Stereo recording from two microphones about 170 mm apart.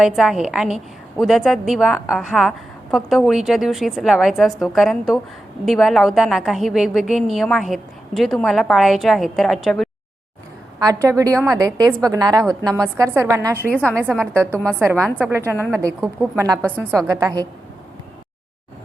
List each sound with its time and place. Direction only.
0.0 s a woman's voice: centre (ahead or behind)
10.8 s a woman's voice: 20° right (ahead or behind)
14.5 s a woman's voice: 5° left (ahead or behind)
14.8 s a woman's voice: 15° right (ahead or behind)
15.5 s a woman's voice: 5° left (ahead or behind)
15.8 s a woman's voice: 20° right (ahead or behind)
16.6 s a woman's voice: 10° left (ahead or behind)
17.1 s a woman's voice: 20° right (ahead or behind)